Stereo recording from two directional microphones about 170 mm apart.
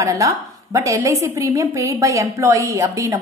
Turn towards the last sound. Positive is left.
turn(degrees=-15)  # may be behind; listen again after turning